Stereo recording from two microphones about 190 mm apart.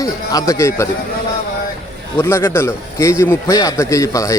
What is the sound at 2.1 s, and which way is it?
A man's voice, 15° left (ahead or behind).